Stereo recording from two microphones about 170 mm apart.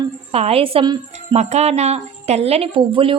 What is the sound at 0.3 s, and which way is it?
Speech, 35° right (ahead or behind).